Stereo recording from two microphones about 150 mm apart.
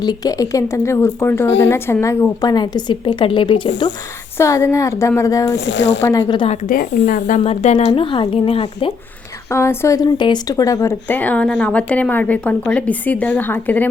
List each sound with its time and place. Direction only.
0.0 s speech: 25° left (ahead or behind)
4.4 s speech: 20° left (ahead or behind)
6.2 s speech: 35° left (ahead or behind)
6.7 s speech: 65° left (ahead or behind)
7.4 s speech: 45° left (ahead or behind)
9.5 s speech: 20° left (ahead or behind)
11.1 s a woman's voice: 10° left (ahead or behind)